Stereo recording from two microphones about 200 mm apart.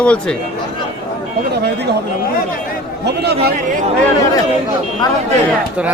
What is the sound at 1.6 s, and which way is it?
Speech, 55° right (ahead or behind).